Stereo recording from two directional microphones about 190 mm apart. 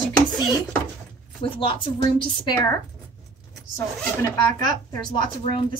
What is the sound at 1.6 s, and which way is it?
Speech, 25° left (ahead or behind).